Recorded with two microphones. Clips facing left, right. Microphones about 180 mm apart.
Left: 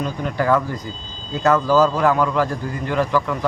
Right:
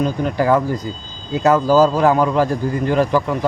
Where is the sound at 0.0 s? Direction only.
25° right (ahead or behind).